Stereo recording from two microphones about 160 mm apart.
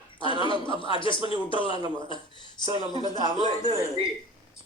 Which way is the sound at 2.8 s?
30° left (ahead or behind).